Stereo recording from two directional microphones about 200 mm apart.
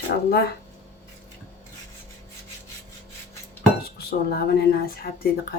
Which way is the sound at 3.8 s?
50° left (ahead or behind).